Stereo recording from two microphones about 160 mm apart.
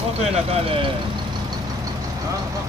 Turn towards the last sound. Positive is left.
turn(degrees=-40)  # may be behind; listen again after turning